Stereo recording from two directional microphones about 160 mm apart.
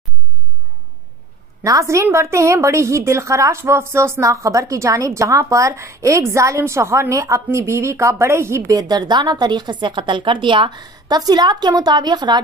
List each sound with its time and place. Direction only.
1.6 s a woman's voice: 20° right (ahead or behind)